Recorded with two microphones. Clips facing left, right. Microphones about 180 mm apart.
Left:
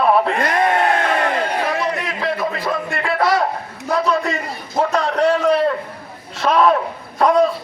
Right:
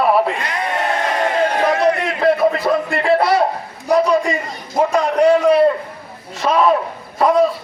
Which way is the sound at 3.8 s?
15° right (ahead or behind).